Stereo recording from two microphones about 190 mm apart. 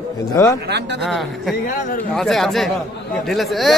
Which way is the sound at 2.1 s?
Centre (ahead or behind).